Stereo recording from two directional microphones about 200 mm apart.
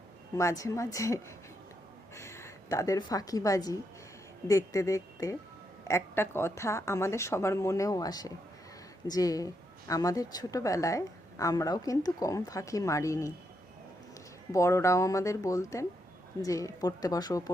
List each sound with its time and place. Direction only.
0.3 s a woman's voice: 15° left (ahead or behind)
14.5 s speech: 15° left (ahead or behind)